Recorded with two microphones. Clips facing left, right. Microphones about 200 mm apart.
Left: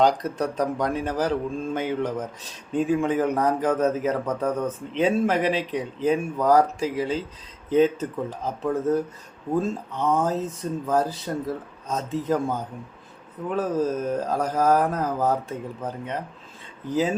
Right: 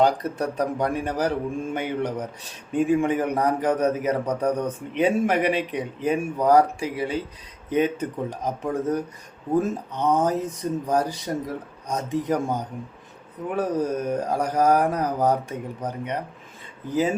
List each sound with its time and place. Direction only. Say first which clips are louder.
0.0 s speech: even; 10° right (ahead or behind)